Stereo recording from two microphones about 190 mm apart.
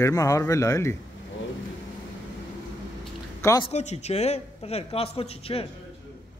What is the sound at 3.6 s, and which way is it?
A man's voice, 35° left (ahead or behind).